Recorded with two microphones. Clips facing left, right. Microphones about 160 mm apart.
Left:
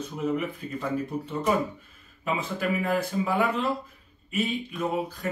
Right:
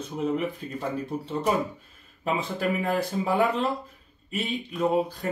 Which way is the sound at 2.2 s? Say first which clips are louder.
Right 2 dB; 30° right (ahead or behind).